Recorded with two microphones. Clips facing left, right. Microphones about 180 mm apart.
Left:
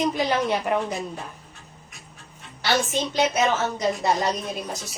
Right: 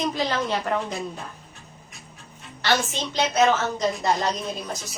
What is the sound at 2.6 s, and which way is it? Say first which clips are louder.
A woman's voice: left 1 dB; 10° left (ahead or behind).